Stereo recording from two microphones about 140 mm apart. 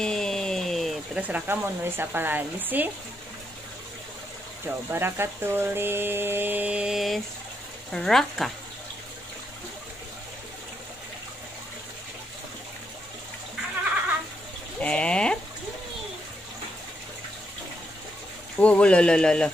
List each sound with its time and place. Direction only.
0.0 s a sound: 5° left (ahead or behind)
1.2 s speech: 15° right (ahead or behind)
4.6 s speech: 15° right (ahead or behind); by 8.5 s 5° left (ahead or behind)
14.8 s speech: 10° left (ahead or behind)
18.6 s speech: 10° left (ahead or behind)